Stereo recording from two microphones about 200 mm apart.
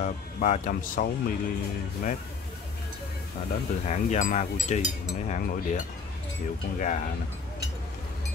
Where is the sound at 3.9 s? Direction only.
35° left (ahead or behind).